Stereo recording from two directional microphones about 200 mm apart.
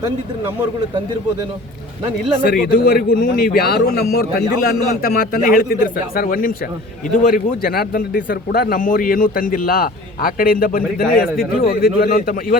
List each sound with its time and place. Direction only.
2.4 s a man's voice: 50° left (ahead or behind)